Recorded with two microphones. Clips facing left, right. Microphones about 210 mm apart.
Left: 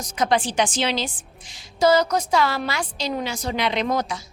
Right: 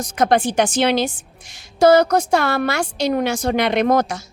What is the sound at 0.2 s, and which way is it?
A woman's voice, 60° right (ahead or behind).